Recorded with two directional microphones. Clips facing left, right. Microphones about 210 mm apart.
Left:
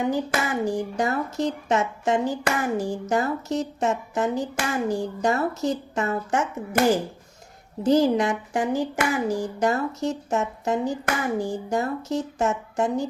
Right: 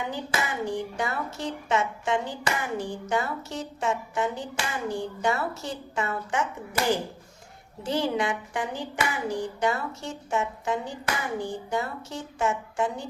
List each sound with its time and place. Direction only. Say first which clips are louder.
0.1 s speech: left 6 dB; 45° left (ahead or behind)
7.9 s speech: left 7 dB; 40° left (ahead or behind)